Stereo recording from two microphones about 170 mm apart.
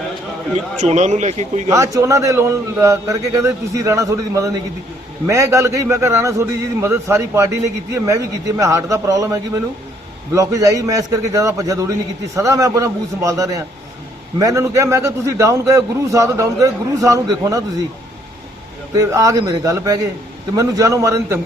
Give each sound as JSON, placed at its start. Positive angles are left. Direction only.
{"t": 0.8, "sound": "a man's voice", "side_deg": -45}
{"t": 1.7, "sound": "a man's voice", "side_deg": -20}
{"t": 18.9, "sound": "a man's voice", "side_deg": -20}